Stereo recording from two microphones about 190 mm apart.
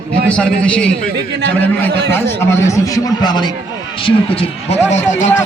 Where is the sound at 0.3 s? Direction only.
5° left (ahead or behind).